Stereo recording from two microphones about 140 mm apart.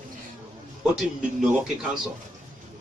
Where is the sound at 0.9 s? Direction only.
5° right (ahead or behind).